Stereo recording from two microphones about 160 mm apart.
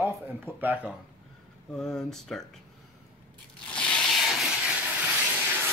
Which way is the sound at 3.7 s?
5° left (ahead or behind).